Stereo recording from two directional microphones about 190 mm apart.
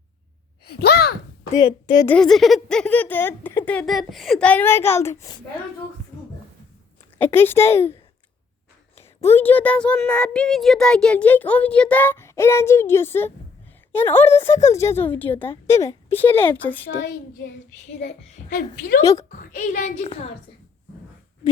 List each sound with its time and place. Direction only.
0.6 s sigh: 55° left (ahead or behind)
1.5 s a woman's voice: 20° left (ahead or behind)
2.0 s speech: 5° left (ahead or behind)
7.2 s speech: 10° left (ahead or behind)
9.3 s speech: 10° left (ahead or behind)
17.0 s a child's voice: 60° left (ahead or behind)
18.5 s a child's voice: 65° left (ahead or behind)
19.3 s a woman's voice: 50° left (ahead or behind)